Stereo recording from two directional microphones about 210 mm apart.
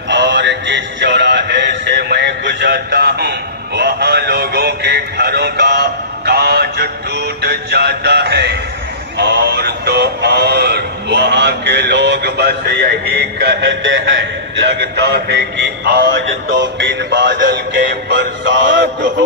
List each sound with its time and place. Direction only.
0.1 s music: 55° right (ahead or behind)
14.8 s a man's voice: 50° right (ahead or behind)
16.4 s music: 55° right (ahead or behind)